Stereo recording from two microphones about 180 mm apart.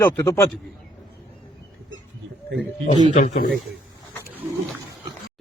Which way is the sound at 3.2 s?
40° left (ahead or behind).